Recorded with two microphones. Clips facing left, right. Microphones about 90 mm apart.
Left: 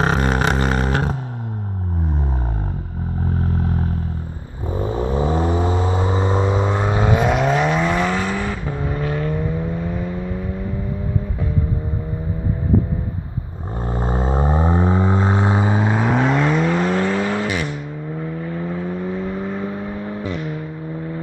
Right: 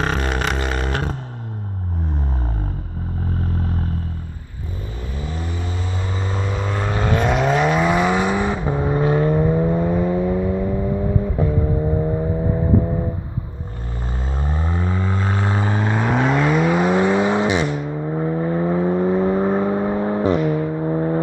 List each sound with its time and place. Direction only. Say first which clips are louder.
0.0 s vehicle: left 3 dB; 15° left (ahead or behind)
0.5 s a sound: left 4 dB; 35° left (ahead or behind)
0.7 s a sound: left 3 dB; 15° left (ahead or behind)
4.9 s vehicle: left 12 dB; 35° left (ahead or behind); by 10.1 s 25° right (ahead or behind)
14.0 s vehicle: left 8 dB; 35° left (ahead or behind); by 20.4 s 40° right (ahead or behind)
20.8 s music: right 8 dB; 45° right (ahead or behind)